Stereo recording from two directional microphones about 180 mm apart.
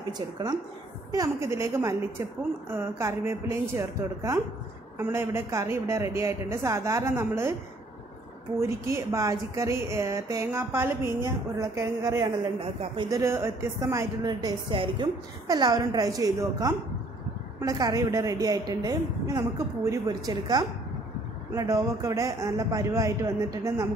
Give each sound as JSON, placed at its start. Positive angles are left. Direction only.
{"t": 1.1, "sound": "a woman's voice", "side_deg": -20}
{"t": 8.5, "sound": "a woman's voice", "side_deg": -15}